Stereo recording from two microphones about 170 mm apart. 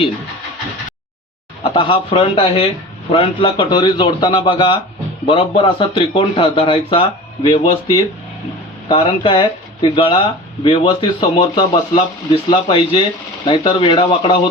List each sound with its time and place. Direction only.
1.6 s speech: 30° left (ahead or behind)
8.9 s speech: 30° left (ahead or behind)